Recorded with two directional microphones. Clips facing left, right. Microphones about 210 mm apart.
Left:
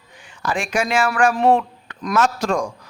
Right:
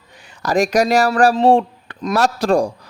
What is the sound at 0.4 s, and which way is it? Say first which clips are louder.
A man's voice: right 7 dB; 40° right (ahead or behind).